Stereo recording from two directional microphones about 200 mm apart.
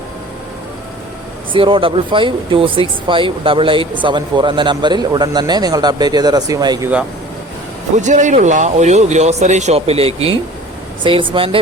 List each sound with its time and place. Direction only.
1.5 s speech: 25° right (ahead or behind)
7.9 s speech: 35° right (ahead or behind)